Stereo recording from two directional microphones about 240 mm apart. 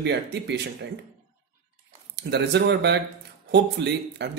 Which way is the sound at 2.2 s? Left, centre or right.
Right.